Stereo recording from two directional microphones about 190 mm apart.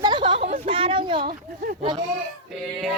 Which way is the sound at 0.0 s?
25° right (ahead or behind).